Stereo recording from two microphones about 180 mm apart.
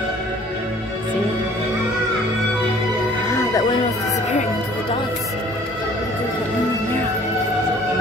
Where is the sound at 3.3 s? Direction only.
20° left (ahead or behind).